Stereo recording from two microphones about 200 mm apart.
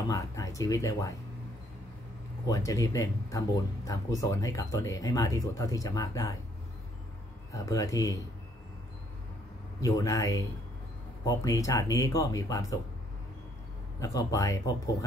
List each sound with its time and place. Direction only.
0.1 s speech: 15° left (ahead or behind)
2.4 s speech: 15° left (ahead or behind)
7.5 s speech: 15° left (ahead or behind)
9.8 s speech: 15° left (ahead or behind)
13.9 s speech: 15° left (ahead or behind)